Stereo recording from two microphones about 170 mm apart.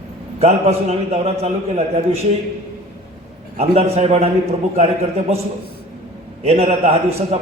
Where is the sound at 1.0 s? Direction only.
40° right (ahead or behind).